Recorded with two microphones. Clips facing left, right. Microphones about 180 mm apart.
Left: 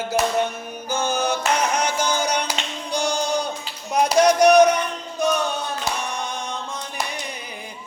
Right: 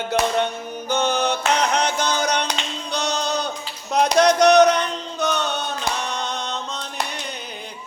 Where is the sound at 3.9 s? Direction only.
10° left (ahead or behind).